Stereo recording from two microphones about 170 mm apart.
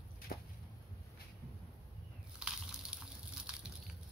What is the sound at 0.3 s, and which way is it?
Whip, 55° left (ahead or behind).